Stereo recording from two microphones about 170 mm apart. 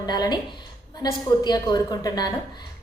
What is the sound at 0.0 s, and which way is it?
A woman's voice, 25° left (ahead or behind).